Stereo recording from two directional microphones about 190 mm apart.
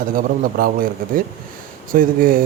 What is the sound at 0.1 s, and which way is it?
Speech, 50° right (ahead or behind).